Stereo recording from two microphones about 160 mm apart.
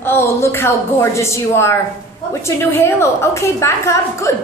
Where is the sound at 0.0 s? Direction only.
15° left (ahead or behind).